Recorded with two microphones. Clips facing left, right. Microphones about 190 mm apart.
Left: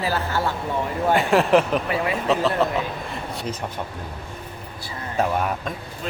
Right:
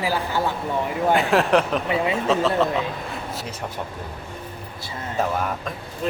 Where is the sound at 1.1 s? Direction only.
Centre (ahead or behind).